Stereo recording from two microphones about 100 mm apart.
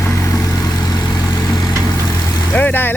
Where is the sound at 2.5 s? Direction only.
15° left (ahead or behind).